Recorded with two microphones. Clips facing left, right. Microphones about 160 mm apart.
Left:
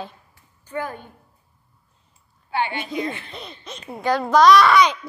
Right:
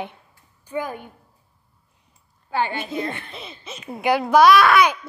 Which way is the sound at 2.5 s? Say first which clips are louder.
Right 1 dB; 40° right (ahead or behind).